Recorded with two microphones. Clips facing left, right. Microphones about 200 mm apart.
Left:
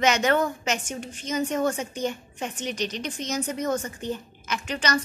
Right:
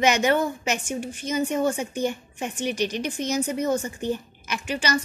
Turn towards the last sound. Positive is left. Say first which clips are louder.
# right 1 dB
turn(degrees=-10)  # may be behind; listen again after turning